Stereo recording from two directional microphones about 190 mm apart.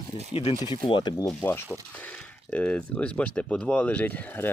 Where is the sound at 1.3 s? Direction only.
10° left (ahead or behind).